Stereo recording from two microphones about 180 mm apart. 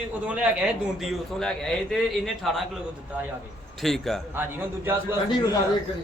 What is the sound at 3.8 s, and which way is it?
Speech, centre (ahead or behind).